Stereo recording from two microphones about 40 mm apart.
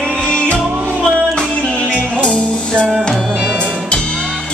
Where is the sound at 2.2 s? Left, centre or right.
Left.